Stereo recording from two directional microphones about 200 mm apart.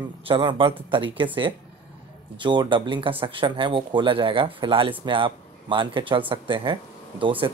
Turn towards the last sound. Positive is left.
turn(degrees=-25)  # may be behind; listen again after turning